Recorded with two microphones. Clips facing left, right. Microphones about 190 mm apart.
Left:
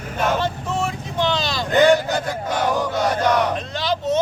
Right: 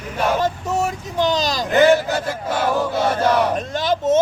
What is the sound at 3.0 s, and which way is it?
Speech, 25° right (ahead or behind).